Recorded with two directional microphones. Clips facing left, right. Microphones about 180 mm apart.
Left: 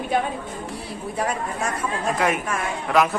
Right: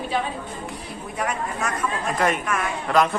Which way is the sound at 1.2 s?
30° left (ahead or behind).